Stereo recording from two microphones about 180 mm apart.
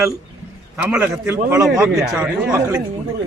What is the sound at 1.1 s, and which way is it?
A man's voice, 15° right (ahead or behind).